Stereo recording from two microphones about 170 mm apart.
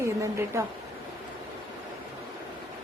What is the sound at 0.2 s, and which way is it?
Speech, 15° right (ahead or behind).